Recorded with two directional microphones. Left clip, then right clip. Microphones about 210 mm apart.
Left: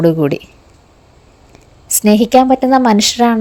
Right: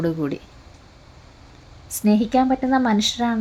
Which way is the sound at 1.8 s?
40° left (ahead or behind).